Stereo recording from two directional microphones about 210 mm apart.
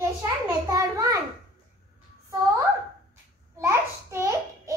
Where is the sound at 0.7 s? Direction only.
15° right (ahead or behind).